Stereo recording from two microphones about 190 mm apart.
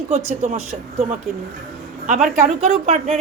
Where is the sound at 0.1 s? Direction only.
40° right (ahead or behind).